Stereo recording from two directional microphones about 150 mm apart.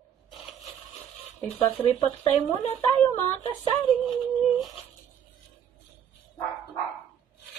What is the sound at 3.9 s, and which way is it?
Speech, centre (ahead or behind).